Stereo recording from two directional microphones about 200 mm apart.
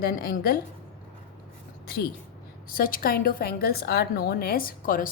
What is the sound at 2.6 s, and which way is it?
A woman's voice, 45° left (ahead or behind).